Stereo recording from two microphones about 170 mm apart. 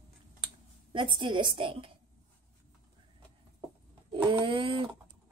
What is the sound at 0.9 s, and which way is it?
Speech, 30° right (ahead or behind).